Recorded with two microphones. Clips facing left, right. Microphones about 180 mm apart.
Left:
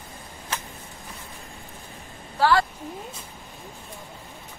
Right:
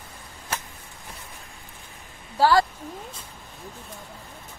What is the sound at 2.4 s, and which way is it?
Speech, 35° right (ahead or behind).